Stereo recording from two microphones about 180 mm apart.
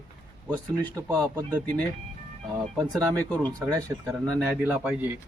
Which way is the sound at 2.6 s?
Centre (ahead or behind).